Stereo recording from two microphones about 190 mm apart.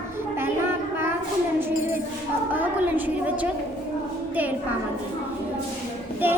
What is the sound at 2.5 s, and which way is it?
Speech, 10° right (ahead or behind).